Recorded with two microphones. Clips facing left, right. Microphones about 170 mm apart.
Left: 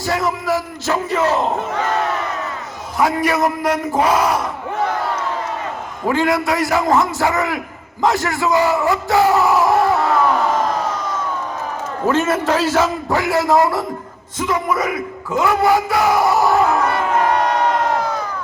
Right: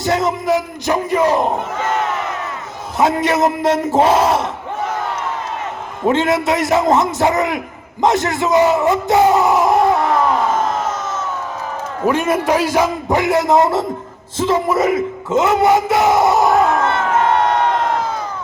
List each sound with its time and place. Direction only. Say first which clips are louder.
0.0 s a man's voice: right 3 dB; 20° right (ahead or behind)
3.0 s speech: right 2 dB; 20° right (ahead or behind)
6.1 s speech: right 2 dB; 20° right (ahead or behind)
12.0 s a man's voice: right 1 dB; 15° right (ahead or behind)